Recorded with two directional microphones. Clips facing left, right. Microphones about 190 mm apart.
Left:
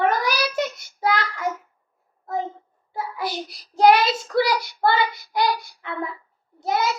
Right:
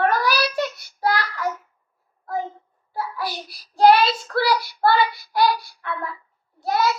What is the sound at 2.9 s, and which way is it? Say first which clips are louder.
Child singing: even; 20° left (ahead or behind).